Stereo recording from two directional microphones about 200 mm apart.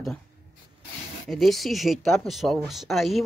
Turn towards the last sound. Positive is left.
turn(degrees=0)  # may be behind; listen again after turning